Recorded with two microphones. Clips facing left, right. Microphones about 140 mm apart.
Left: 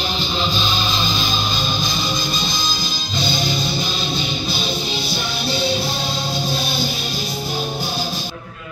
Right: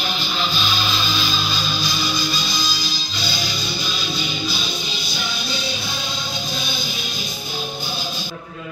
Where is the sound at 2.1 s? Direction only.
45° left (ahead or behind).